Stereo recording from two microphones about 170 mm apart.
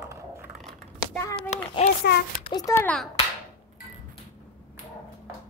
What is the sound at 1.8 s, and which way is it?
Speech, 45° left (ahead or behind).